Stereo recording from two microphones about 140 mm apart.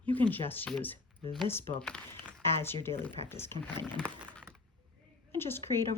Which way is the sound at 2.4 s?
15° left (ahead or behind).